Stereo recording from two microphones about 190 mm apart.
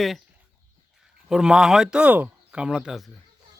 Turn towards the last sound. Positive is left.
turn(degrees=-5)  # may be behind; listen again after turning